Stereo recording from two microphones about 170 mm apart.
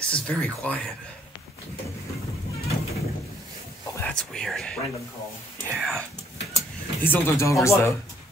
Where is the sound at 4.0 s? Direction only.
5° left (ahead or behind).